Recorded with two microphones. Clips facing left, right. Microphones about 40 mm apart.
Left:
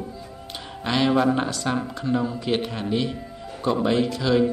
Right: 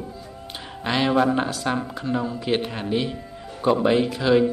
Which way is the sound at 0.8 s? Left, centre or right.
Centre.